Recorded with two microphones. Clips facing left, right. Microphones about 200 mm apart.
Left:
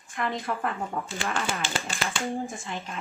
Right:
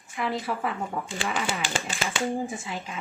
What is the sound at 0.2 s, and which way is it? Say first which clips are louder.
Speech: right 1 dB; 5° right (ahead or behind).